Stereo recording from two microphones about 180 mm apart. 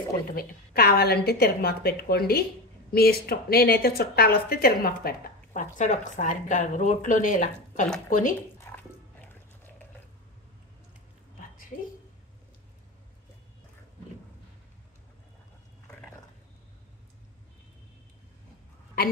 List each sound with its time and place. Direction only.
0.3 s a woman's voice: 55° left (ahead or behind)
8.5 s music: 10° left (ahead or behind)